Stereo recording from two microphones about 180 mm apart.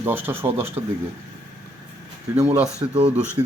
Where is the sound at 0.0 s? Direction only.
10° right (ahead or behind).